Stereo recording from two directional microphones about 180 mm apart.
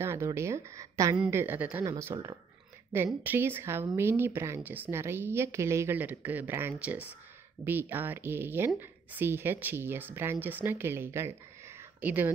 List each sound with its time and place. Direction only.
0.0 s speech: 15° right (ahead or behind)
1.1 s speech: 5° right (ahead or behind)